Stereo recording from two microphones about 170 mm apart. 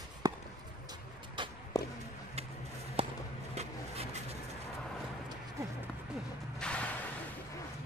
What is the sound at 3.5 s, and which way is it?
Vehicle, 40° right (ahead or behind).